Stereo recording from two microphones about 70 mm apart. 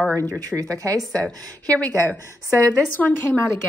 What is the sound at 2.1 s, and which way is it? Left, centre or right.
Speech, left.